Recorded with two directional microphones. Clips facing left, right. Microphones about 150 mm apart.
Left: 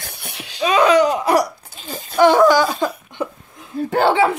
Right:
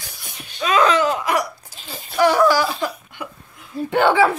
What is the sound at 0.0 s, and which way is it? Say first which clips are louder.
Wheeze: left 5 dB; 60° left (ahead or behind).